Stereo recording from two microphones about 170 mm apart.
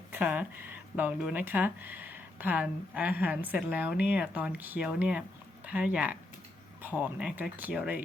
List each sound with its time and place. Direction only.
0.1 s speech: 10° right (ahead or behind)